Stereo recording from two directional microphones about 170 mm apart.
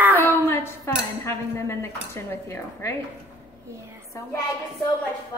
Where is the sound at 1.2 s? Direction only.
15° left (ahead or behind).